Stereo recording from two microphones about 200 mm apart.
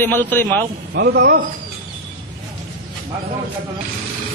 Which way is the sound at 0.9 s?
55° right (ahead or behind).